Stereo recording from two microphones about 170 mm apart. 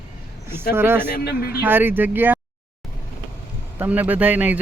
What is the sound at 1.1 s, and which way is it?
Speech, 65° left (ahead or behind).